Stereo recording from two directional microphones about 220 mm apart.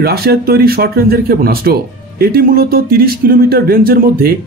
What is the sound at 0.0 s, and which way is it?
Speech, 45° right (ahead or behind).